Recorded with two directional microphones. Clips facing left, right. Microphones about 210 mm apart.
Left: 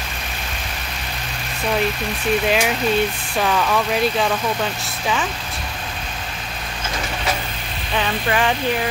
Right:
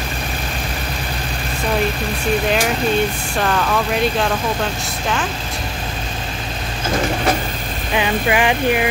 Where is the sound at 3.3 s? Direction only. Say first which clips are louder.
Even; centre (ahead or behind).